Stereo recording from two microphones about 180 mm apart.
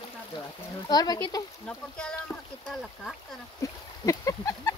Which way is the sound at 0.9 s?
20° left (ahead or behind).